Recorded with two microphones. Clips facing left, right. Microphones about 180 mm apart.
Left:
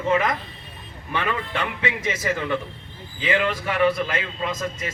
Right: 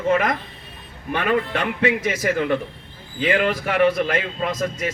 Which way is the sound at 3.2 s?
50° right (ahead or behind).